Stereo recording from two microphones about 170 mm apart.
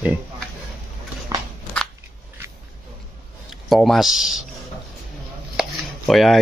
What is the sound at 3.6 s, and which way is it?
Speech, centre (ahead or behind).